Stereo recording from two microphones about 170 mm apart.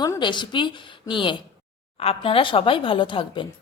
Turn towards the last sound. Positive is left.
turn(degrees=30)  # may be behind; listen again after turning